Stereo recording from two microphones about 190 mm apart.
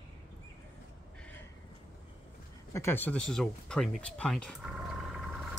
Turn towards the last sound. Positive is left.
turn(degrees=0)  # may be behind; listen again after turning